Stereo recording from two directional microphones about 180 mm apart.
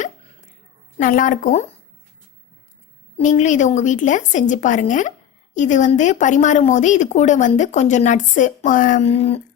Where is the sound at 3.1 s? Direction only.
40° left (ahead or behind).